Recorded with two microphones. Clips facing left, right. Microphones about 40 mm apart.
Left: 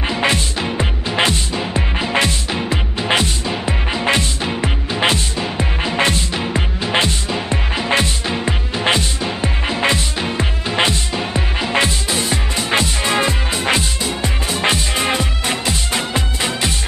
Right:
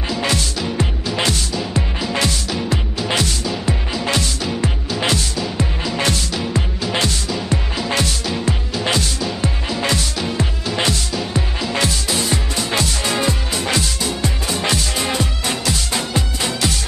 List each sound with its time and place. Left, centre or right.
0.1 s music: left